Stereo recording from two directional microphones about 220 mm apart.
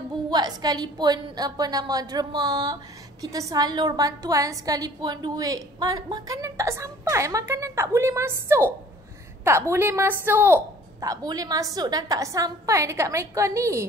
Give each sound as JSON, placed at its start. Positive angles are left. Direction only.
{"t": 0.3, "sound": "a woman's voice", "side_deg": -20}